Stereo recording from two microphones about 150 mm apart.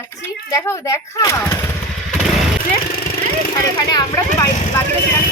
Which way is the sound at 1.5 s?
15° left (ahead or behind).